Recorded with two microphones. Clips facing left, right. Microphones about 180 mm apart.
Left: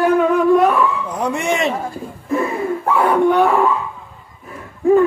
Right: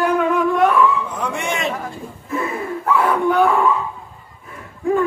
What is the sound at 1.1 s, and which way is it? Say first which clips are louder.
Speech: left 5 dB; 30° left (ahead or behind).